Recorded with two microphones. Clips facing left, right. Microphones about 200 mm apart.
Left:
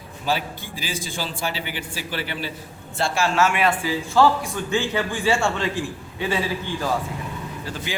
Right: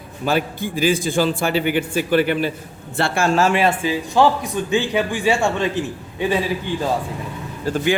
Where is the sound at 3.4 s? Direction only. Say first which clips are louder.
Right 2 dB; 30° right (ahead or behind).